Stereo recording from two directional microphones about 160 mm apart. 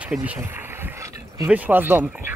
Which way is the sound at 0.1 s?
10° right (ahead or behind).